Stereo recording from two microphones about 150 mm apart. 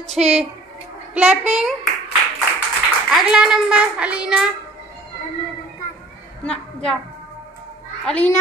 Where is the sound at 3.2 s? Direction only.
5° right (ahead or behind).